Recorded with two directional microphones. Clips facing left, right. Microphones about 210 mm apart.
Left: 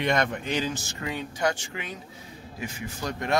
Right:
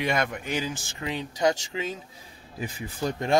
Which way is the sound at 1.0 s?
20° right (ahead or behind).